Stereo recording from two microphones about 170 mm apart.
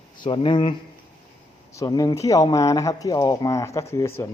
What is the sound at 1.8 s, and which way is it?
Speech, 20° left (ahead or behind).